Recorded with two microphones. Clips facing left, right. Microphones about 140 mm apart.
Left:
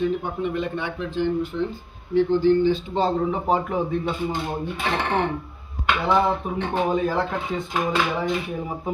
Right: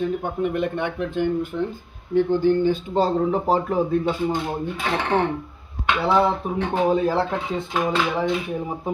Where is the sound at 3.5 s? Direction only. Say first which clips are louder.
Right 2 dB; 35° right (ahead or behind).